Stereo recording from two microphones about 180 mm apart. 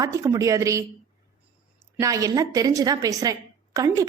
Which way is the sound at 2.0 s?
20° right (ahead or behind).